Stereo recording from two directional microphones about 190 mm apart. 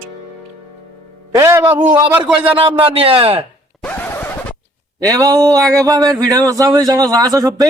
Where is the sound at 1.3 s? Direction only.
15° right (ahead or behind).